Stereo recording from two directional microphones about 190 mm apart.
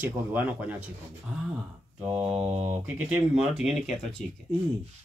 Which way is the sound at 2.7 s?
5° right (ahead or behind).